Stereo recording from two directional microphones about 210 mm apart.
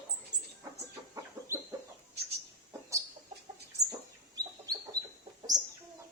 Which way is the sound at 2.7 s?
15° right (ahead or behind).